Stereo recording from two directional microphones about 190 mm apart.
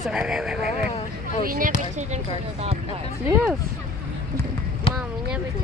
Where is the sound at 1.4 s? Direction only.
50° right (ahead or behind).